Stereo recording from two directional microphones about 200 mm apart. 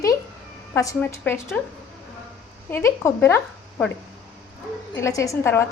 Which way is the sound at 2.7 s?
15° left (ahead or behind).